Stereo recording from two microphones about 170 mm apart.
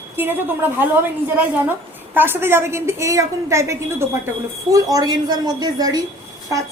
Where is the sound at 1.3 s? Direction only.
10° right (ahead or behind).